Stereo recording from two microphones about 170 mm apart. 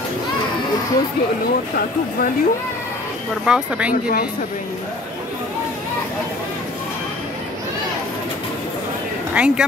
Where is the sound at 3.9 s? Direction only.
60° left (ahead or behind).